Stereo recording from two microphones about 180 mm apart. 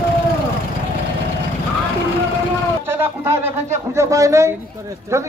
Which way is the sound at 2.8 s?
10° right (ahead or behind).